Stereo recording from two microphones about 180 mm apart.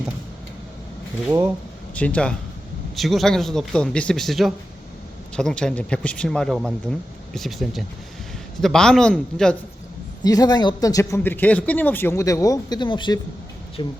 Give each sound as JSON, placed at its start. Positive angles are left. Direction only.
{"t": 2.0, "sound": "a man's voice", "side_deg": 5}
{"t": 10.2, "sound": "speech", "side_deg": 20}